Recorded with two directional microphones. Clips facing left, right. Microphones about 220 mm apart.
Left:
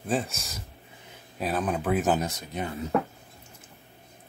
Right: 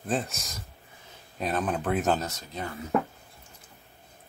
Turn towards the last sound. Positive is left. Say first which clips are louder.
# left 3 dB
turn(degrees=15)  # may be behind; listen again after turning